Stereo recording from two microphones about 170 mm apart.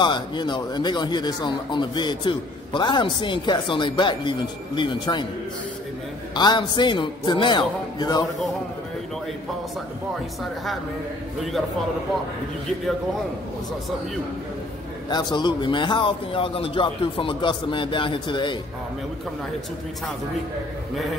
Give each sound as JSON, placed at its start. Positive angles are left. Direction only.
{"t": 0.0, "sound": "speech", "side_deg": 25}
{"t": 6.3, "sound": "speech", "side_deg": 25}
{"t": 15.0, "sound": "speech", "side_deg": 25}